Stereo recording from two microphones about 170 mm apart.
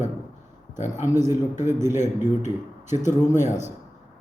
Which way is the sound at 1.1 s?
15° right (ahead or behind).